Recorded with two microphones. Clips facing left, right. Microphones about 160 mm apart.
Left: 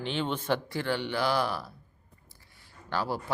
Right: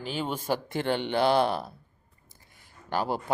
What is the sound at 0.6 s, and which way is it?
A woman's voice, 20° right (ahead or behind).